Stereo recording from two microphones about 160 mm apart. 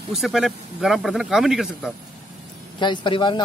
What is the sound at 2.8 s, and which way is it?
Speech, 30° left (ahead or behind).